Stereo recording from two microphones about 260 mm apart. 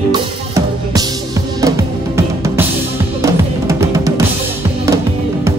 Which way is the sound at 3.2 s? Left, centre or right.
Centre.